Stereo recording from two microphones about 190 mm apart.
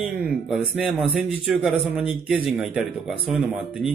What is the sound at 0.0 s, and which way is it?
Speech, 5° right (ahead or behind).